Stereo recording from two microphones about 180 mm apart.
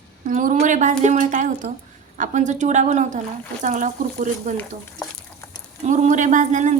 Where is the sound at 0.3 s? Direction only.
45° right (ahead or behind).